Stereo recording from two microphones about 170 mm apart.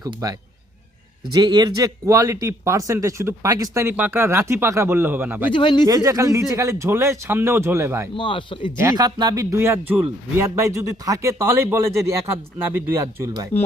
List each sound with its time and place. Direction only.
0.0 s speech: 20° right (ahead or behind)
5.5 s speech: 30° left (ahead or behind)
5.9 s speech: 20° right (ahead or behind)
8.1 s speech: 30° left (ahead or behind)
8.8 s speech: 20° right (ahead or behind)